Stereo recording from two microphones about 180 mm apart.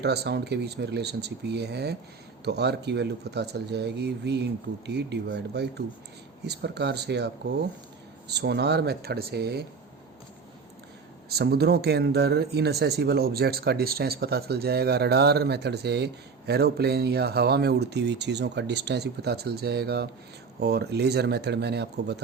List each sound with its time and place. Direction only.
0.0 s a man's voice: 65° right (ahead or behind)
11.3 s a man's voice: 65° right (ahead or behind)